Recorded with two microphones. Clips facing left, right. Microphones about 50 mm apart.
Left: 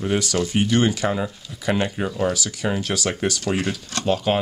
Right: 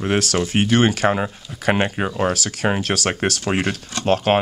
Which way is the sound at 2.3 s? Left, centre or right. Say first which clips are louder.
Right 3 dB; right.